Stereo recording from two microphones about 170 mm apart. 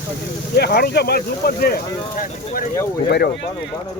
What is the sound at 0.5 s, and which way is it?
Speech, 70° left (ahead or behind).